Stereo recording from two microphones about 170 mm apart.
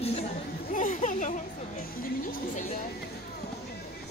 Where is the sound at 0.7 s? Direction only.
50° left (ahead or behind).